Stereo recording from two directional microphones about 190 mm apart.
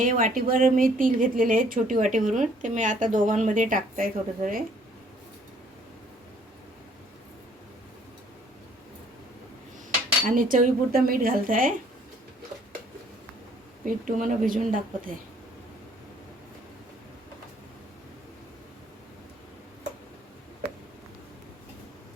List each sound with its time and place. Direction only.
0.0 s a woman's voice: 45° right (ahead or behind)
10.2 s a woman's voice: 45° right (ahead or behind)
13.8 s a woman's voice: 40° right (ahead or behind)